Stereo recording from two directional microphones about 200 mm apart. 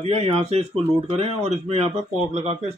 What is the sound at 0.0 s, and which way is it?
Speech, 30° right (ahead or behind).